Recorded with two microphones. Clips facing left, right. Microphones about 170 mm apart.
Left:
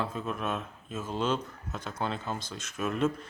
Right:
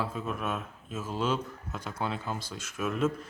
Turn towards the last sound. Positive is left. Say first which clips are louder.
# even
turn(degrees=-5)  # may be behind; listen again after turning